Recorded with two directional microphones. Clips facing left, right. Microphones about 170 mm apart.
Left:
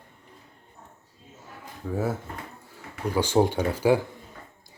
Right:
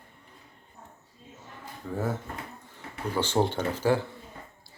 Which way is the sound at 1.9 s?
10° left (ahead or behind).